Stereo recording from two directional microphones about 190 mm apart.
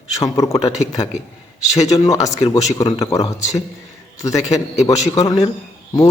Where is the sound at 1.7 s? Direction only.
20° left (ahead or behind).